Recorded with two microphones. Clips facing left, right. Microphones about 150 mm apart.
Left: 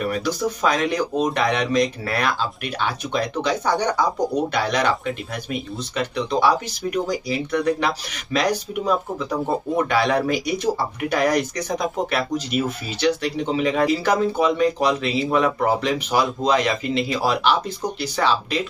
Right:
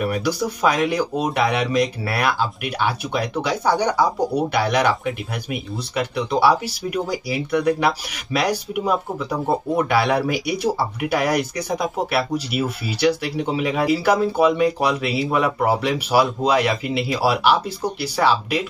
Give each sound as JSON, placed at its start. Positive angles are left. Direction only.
{"t": 0.0, "sound": "speech", "side_deg": -10}